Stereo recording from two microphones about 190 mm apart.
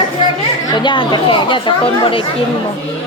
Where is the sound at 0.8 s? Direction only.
25° left (ahead or behind).